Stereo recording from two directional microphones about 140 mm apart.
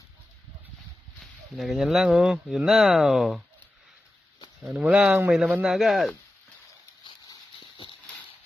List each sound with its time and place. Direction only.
1.2 s speech: centre (ahead or behind)
4.6 s speech: 5° right (ahead or behind)
7.1 s a sound: 35° left (ahead or behind)